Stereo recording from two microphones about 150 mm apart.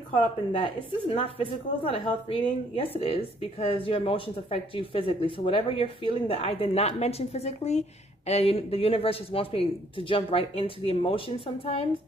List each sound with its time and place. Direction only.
0.1 s a woman's voice: 35° left (ahead or behind)